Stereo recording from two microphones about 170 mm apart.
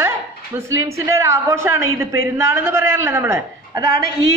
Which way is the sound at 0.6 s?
15° right (ahead or behind).